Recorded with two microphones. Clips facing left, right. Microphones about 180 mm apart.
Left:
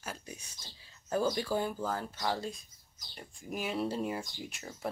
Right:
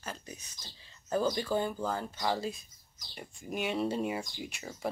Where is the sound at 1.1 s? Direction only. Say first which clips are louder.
Right 1 dB; 5° left (ahead or behind).